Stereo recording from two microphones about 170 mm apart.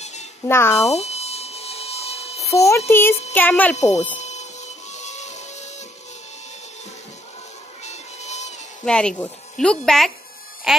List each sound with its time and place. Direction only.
0.0 s music: 40° left (ahead or behind)
0.5 s speech: 15° left (ahead or behind)
0.8 s a sound: 40° left (ahead or behind)
2.4 s speech: 15° left (ahead or behind)
3.7 s speech: 40° left (ahead or behind)
4.2 s music: 40° left (ahead or behind)
7.8 s music: 40° left (ahead or behind)
8.8 s a woman's voice: 5° left (ahead or behind)